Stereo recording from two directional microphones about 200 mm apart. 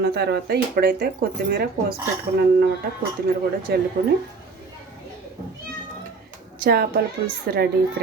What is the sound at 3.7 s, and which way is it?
Speech, 55° right (ahead or behind).